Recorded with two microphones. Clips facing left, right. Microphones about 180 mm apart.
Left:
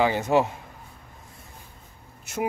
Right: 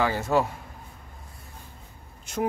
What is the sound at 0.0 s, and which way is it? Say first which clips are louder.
Speech: left 3 dB; 15° left (ahead or behind).